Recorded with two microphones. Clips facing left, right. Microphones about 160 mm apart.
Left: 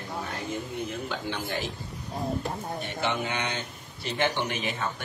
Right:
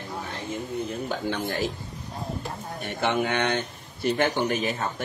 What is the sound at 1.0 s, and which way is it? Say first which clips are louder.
Speech: right 4 dB; 45° right (ahead or behind).